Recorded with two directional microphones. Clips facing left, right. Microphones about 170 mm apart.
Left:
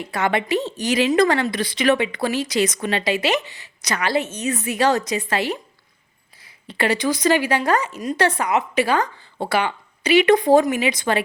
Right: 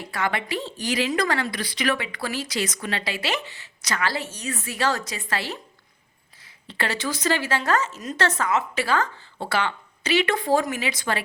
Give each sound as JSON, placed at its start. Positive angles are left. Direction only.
{"t": 0.0, "sound": "a woman's voice", "side_deg": 20}